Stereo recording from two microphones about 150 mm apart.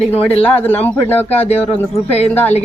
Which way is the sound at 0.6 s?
10° left (ahead or behind).